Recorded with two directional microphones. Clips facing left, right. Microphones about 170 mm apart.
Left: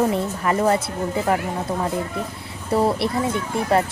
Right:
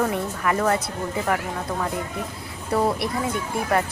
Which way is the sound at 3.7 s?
30° left (ahead or behind).